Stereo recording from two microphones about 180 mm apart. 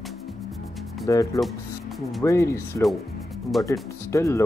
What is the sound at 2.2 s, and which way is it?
Speech, 15° left (ahead or behind).